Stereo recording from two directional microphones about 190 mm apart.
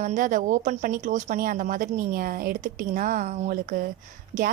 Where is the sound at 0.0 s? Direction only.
40° right (ahead or behind).